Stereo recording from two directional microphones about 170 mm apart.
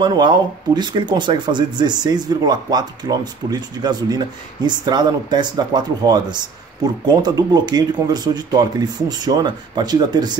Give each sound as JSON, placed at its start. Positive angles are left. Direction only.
{"t": 0.0, "sound": "speech", "side_deg": -25}